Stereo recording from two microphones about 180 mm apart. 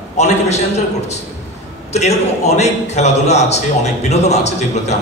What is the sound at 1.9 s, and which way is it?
A man's voice, 40° left (ahead or behind).